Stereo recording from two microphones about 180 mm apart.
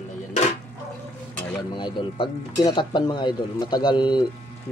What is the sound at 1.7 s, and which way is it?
Speech, 25° left (ahead or behind).